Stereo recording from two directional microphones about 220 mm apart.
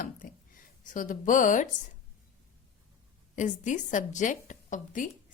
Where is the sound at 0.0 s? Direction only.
40° left (ahead or behind).